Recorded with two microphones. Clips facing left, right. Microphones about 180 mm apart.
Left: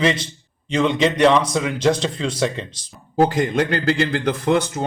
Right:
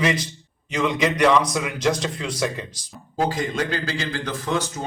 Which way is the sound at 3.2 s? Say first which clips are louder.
Left 6 dB; 60° left (ahead or behind).